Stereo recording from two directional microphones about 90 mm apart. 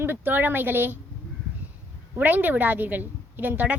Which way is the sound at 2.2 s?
20° right (ahead or behind).